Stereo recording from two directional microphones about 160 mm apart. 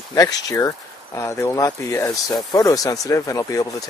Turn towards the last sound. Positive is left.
turn(degrees=20)  # may be behind; listen again after turning